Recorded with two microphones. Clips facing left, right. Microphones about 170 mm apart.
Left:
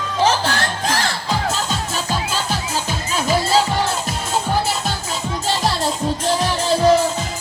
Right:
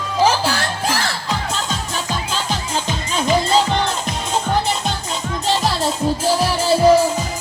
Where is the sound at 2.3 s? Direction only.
5° left (ahead or behind).